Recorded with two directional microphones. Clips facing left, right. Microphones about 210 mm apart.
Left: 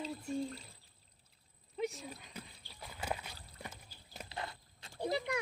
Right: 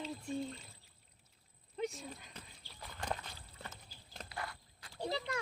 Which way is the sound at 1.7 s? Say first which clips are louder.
Left 1 dB; centre (ahead or behind).